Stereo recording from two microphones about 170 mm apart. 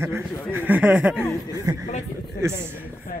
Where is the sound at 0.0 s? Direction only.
15° right (ahead or behind).